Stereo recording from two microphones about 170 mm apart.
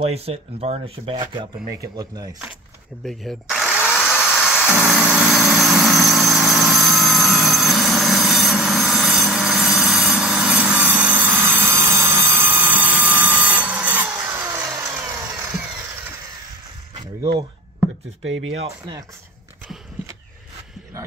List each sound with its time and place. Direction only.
0.0 s speech: 35° right (ahead or behind)
3.1 s power tool: centre (ahead or behind)
4.2 s music: 5° right (ahead or behind)
6.3 s vehicle: centre (ahead or behind)
14.6 s engine: 20° right (ahead or behind)
18.6 s speech: 25° right (ahead or behind)